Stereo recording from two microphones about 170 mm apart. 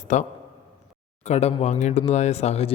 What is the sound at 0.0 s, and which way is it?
A man's voice, 45° left (ahead or behind).